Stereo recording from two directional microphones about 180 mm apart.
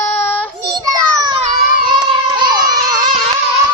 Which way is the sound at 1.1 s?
20° right (ahead or behind).